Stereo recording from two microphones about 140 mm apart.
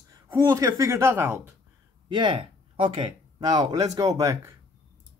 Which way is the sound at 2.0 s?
35° right (ahead or behind).